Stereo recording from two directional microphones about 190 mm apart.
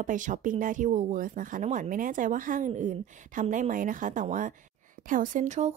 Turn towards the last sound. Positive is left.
turn(degrees=-35)  # may be behind; listen again after turning